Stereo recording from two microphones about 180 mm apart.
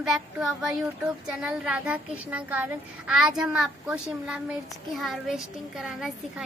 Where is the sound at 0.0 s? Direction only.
5° right (ahead or behind).